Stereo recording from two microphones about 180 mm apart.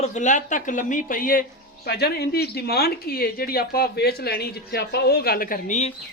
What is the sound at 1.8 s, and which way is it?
Speech, 65° left (ahead or behind).